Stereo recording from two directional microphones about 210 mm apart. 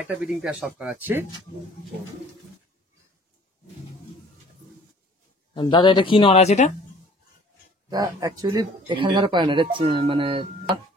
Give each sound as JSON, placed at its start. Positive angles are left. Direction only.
{"t": 0.0, "sound": "speech", "side_deg": 0}
{"t": 5.5, "sound": "speech", "side_deg": 20}
{"t": 7.9, "sound": "speech", "side_deg": -20}